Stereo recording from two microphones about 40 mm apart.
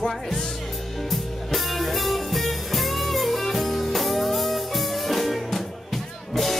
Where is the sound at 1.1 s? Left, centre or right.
Centre.